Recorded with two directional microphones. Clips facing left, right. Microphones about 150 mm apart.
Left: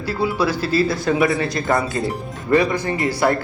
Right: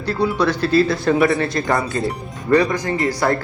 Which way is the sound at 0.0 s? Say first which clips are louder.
Right 2 dB; 5° left (ahead or behind).